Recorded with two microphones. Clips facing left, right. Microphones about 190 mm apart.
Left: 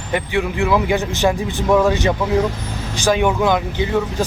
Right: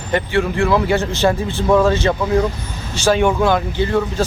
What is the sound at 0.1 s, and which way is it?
Speech, 15° left (ahead or behind).